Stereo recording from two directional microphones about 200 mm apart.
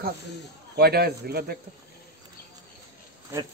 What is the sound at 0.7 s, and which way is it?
Speech, 50° right (ahead or behind).